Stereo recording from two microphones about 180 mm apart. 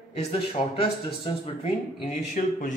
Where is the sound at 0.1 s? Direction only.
35° left (ahead or behind).